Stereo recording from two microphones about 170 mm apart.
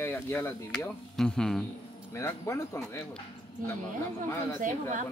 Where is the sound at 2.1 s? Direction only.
15° left (ahead or behind).